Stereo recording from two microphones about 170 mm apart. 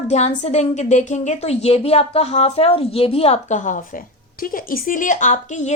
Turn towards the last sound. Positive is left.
turn(degrees=45)  # may be behind; listen again after turning